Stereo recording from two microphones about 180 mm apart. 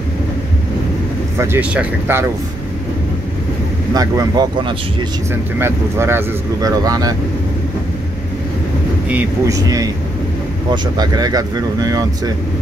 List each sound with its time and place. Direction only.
1.4 s speech: 10° right (ahead or behind)
3.9 s speech: 20° right (ahead or behind)
9.1 s speech: 20° right (ahead or behind)